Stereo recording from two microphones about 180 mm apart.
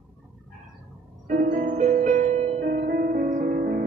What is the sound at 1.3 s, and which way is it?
Music, 50° right (ahead or behind).